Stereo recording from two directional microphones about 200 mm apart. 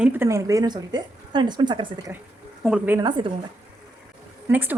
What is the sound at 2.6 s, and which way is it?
Speech, 5° right (ahead or behind).